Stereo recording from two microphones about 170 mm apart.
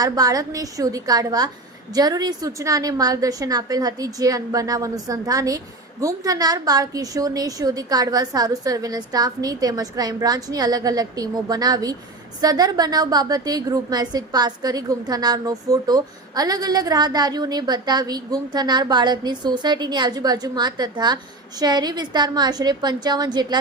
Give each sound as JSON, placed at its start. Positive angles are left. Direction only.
{"t": 0.0, "sound": "a woman's voice", "side_deg": -20}